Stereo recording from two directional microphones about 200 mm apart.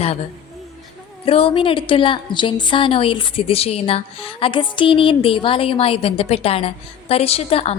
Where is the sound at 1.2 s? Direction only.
30° left (ahead or behind).